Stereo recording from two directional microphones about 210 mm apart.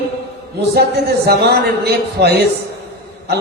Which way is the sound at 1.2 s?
50° right (ahead or behind).